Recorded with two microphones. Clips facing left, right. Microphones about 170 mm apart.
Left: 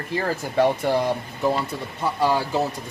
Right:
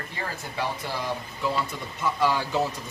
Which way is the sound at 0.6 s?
55° left (ahead or behind).